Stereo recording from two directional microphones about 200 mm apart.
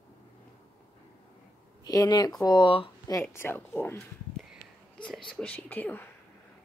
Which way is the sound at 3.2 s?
10° left (ahead or behind).